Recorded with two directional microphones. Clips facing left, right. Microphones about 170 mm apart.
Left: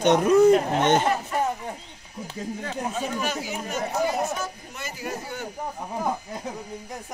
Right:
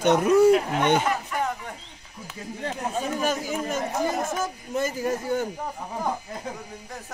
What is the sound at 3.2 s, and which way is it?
Speech, 45° right (ahead or behind).